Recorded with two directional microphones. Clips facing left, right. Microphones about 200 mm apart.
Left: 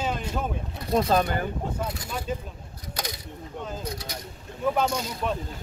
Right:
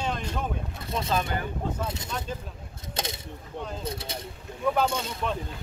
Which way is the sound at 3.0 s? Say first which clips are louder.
Right 1 dB; 25° right (ahead or behind).